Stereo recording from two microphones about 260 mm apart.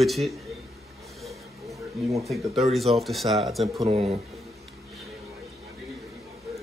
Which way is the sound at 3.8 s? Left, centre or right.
Right.